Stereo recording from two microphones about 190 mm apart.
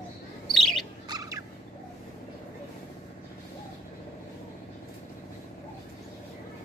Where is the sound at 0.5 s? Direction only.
Centre (ahead or behind).